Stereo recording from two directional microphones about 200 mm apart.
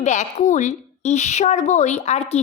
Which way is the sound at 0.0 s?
35° left (ahead or behind).